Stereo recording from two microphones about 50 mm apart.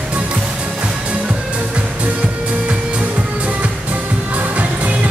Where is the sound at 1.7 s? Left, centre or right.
Right.